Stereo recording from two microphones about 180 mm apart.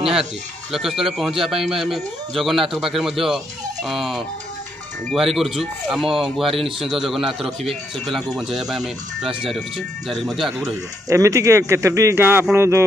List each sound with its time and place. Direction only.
0.1 s speech: centre (ahead or behind)
11.1 s speech: 20° right (ahead or behind)